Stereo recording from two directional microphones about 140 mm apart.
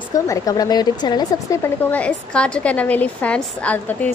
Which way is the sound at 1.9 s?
10° left (ahead or behind).